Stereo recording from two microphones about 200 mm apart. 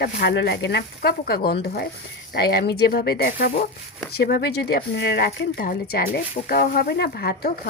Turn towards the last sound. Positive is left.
turn(degrees=50)  # may be behind; listen again after turning